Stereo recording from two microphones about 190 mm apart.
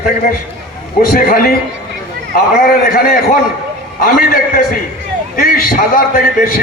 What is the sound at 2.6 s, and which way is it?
A man's voice, 50° left (ahead or behind).